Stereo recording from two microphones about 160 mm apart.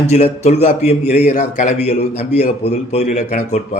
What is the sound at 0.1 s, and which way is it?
A man's voice, 40° left (ahead or behind).